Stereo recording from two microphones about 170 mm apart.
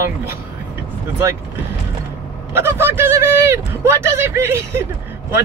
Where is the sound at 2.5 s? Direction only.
15° right (ahead or behind).